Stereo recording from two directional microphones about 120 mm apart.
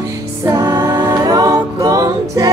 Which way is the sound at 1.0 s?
35° right (ahead or behind).